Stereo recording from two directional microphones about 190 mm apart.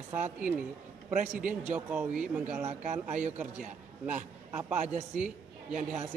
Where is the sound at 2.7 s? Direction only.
40° right (ahead or behind).